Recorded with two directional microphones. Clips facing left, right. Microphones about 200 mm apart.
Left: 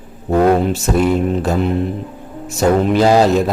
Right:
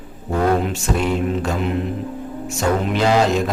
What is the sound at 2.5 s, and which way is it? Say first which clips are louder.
Speech: left 7 dB; 35° left (ahead or behind).